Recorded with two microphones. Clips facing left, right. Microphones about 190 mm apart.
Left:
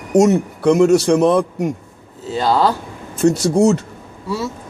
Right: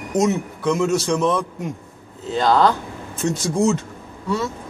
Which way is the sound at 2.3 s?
5° left (ahead or behind).